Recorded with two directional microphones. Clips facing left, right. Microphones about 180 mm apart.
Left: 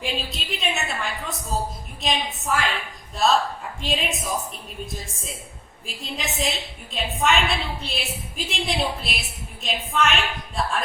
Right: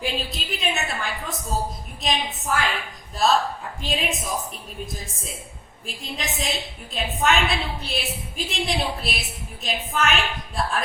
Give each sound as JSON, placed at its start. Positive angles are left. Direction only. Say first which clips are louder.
{"t": 0.0, "sound": "a woman's voice", "louder": "right 1 dB", "side_deg": 0}
{"t": 3.8, "sound": "a woman's voice", "louder": "even", "side_deg": 0}
{"t": 5.8, "sound": "a woman's voice", "louder": "even", "side_deg": 0}